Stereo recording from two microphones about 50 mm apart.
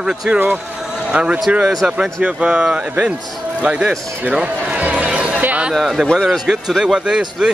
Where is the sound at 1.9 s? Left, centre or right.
Right.